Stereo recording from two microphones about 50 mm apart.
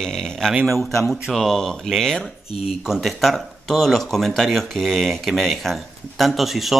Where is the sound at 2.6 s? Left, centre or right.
Centre.